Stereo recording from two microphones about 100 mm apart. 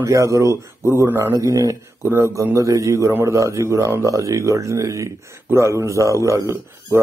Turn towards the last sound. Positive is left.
turn(degrees=-35)  # may be behind; listen again after turning